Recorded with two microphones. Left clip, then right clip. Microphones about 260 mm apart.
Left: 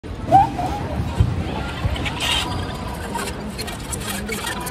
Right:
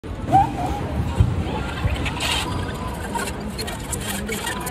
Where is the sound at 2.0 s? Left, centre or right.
Right.